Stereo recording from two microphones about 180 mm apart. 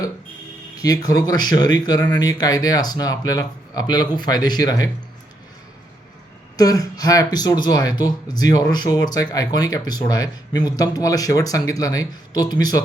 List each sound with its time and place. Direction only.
0.8 s speech: 20° left (ahead or behind)
6.6 s speech: 20° left (ahead or behind)